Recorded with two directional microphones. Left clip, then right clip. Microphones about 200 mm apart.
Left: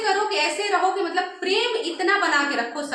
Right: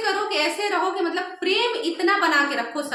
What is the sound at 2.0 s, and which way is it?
Speech, 35° right (ahead or behind).